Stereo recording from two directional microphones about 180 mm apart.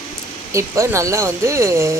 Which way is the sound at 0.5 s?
15° right (ahead or behind).